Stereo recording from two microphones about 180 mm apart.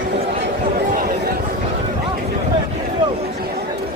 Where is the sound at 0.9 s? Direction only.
50° right (ahead or behind).